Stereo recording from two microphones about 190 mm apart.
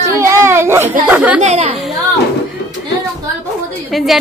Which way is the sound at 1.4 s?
35° right (ahead or behind).